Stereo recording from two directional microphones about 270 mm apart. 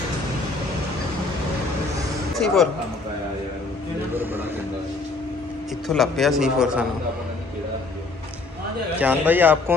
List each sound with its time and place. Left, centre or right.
2.3 s speech: centre
4.1 s vehicle: centre
5.9 s a man's voice: centre
8.9 s a man's voice: centre